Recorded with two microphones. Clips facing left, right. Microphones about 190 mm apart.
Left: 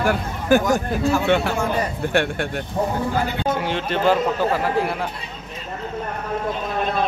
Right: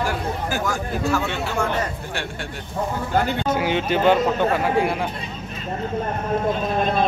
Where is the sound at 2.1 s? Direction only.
60° left (ahead or behind).